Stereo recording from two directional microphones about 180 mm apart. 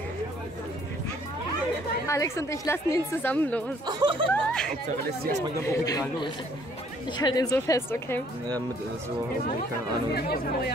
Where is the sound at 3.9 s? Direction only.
25° right (ahead or behind).